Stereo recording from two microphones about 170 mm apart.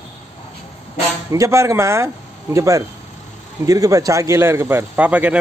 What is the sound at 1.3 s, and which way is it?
A man's voice, 20° right (ahead or behind).